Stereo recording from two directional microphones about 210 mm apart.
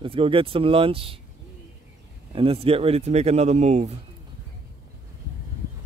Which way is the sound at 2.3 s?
25° right (ahead or behind).